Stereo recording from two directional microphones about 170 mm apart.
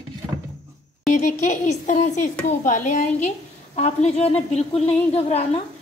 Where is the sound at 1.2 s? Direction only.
45° left (ahead or behind).